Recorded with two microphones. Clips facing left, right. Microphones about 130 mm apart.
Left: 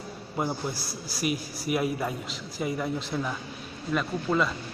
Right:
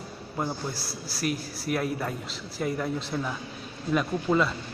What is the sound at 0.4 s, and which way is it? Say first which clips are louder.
Speech: left 1 dB; 10° left (ahead or behind).